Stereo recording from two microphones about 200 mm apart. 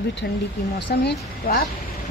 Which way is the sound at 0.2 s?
55° left (ahead or behind).